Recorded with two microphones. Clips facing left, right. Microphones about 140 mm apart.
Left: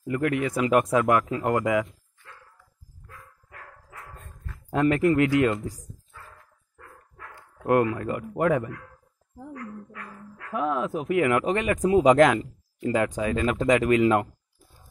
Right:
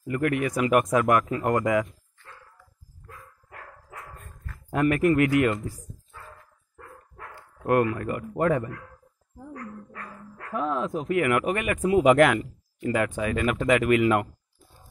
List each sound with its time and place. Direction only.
0.0 s speech: 20° left (ahead or behind)
3.5 s dog: 45° right (ahead or behind)
4.7 s speech: 25° left (ahead or behind)
7.6 s speech: 20° left (ahead or behind)
8.2 s speech: 10° left (ahead or behind)
9.5 s dog: 40° right (ahead or behind)
10.5 s speech: 5° left (ahead or behind)
11.1 s speech: 25° left (ahead or behind)